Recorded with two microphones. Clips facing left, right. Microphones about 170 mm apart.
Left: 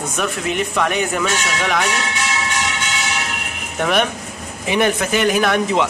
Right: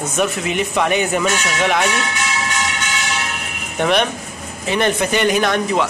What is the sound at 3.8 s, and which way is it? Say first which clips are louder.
A man's voice: right 1 dB; 5° left (ahead or behind).